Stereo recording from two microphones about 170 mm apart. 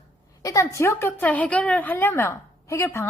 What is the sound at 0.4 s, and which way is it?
A woman's voice, 20° left (ahead or behind).